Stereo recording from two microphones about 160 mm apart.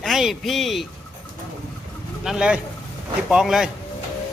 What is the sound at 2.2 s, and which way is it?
A man's voice, 5° right (ahead or behind).